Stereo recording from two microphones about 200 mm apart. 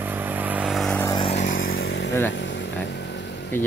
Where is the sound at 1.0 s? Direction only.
20° left (ahead or behind).